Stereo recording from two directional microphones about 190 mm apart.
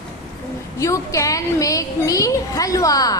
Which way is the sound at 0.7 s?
15° left (ahead or behind).